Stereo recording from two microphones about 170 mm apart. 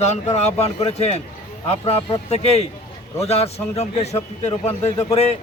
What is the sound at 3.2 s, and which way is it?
A man's voice, 35° left (ahead or behind).